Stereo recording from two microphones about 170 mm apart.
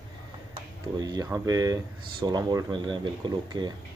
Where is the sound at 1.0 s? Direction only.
20° right (ahead or behind).